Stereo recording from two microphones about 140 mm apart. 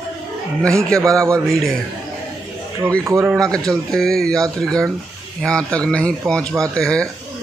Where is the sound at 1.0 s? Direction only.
20° right (ahead or behind).